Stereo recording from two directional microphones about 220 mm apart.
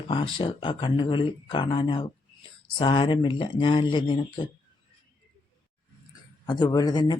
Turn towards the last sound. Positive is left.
turn(degrees=20)  # may be behind; listen again after turning